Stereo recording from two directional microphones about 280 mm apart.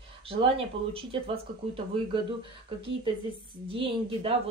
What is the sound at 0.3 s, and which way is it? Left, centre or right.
Speech, centre.